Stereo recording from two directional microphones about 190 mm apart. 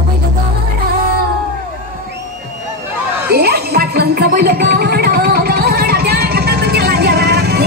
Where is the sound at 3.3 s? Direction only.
55° right (ahead or behind).